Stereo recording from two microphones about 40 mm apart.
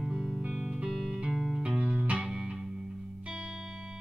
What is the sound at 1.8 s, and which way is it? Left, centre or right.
Music, right.